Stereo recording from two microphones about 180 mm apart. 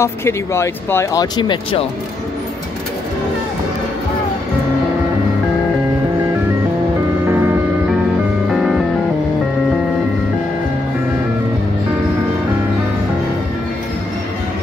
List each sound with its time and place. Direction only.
0.0 s speech: 15° left (ahead or behind)
7.2 s music: 10° right (ahead or behind)
8.5 s music: centre (ahead or behind)